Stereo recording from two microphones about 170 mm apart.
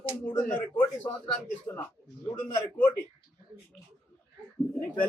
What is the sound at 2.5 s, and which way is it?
Speech, 15° left (ahead or behind).